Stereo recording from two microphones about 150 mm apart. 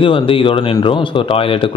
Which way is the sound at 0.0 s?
35° left (ahead or behind).